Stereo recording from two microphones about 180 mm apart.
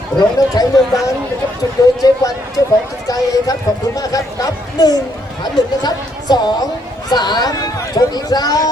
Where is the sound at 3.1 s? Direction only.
20° left (ahead or behind).